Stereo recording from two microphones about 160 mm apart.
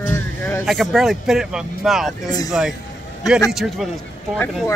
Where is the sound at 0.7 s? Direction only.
Centre (ahead or behind).